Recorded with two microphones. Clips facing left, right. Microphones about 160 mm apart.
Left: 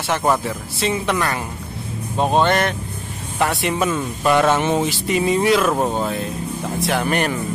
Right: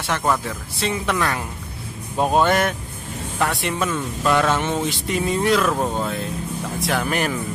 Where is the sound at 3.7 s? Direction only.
15° left (ahead or behind).